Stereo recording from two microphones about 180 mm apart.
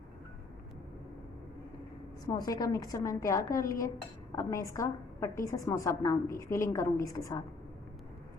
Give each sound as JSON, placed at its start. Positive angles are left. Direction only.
{"t": 2.2, "sound": "a woman's voice", "side_deg": 20}